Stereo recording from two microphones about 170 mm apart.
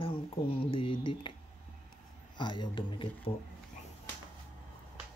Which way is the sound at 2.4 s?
25° left (ahead or behind).